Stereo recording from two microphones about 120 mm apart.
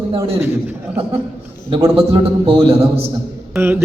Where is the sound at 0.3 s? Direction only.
15° right (ahead or behind).